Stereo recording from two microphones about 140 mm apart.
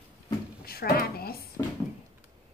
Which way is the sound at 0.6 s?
90° left.